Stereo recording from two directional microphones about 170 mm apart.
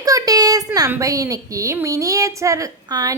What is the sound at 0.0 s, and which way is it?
A woman's voice, 20° right (ahead or behind).